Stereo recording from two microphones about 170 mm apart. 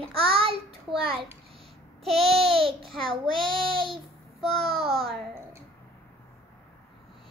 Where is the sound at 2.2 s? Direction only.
35° right (ahead or behind).